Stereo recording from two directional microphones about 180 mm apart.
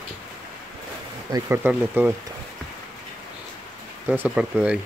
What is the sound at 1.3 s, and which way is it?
Speech, 10° right (ahead or behind).